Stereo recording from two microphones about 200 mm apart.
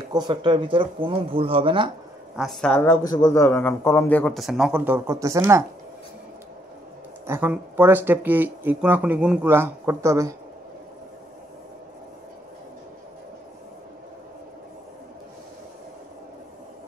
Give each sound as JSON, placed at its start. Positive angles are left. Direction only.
{"t": 0.1, "sound": "speech", "side_deg": -20}
{"t": 2.3, "sound": "speech", "side_deg": 0}
{"t": 3.1, "sound": "speech", "side_deg": 20}
{"t": 7.2, "sound": "speech", "side_deg": -10}